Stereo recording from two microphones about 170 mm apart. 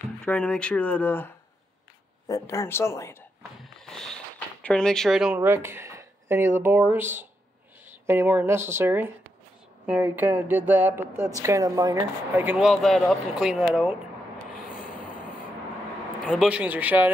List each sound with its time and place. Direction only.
0.2 s speech: 5° left (ahead or behind)
3.6 s a sound: 5° left (ahead or behind)
4.6 s speech: 5° left (ahead or behind)
16.3 s speech: 5° right (ahead or behind)